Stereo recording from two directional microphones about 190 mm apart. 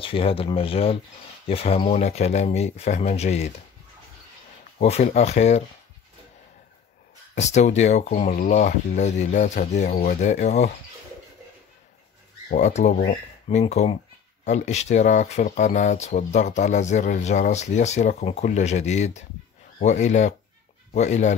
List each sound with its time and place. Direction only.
0.0 s speech: 30° left (ahead or behind)
4.7 s speech: 35° left (ahead or behind)
7.3 s speech: 35° left (ahead or behind)
12.4 s speech: 40° left (ahead or behind)